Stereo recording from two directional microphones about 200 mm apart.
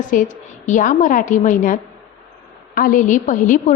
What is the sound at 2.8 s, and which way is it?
Speech, 45° left (ahead or behind).